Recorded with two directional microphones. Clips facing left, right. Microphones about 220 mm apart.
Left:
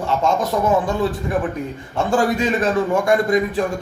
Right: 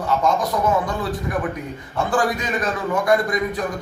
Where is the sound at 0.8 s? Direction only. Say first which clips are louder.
Left 4 dB; 25° left (ahead or behind).